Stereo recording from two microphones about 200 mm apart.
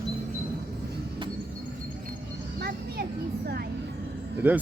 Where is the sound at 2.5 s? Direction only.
50° right (ahead or behind).